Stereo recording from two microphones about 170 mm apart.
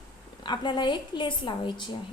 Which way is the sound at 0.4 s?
25° left (ahead or behind).